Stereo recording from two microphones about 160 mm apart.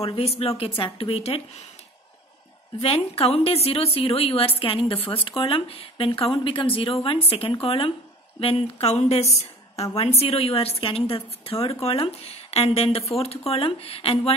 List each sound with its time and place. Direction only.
0.0 s a woman's voice: 40° left (ahead or behind)
2.8 s a woman's voice: 40° left (ahead or behind)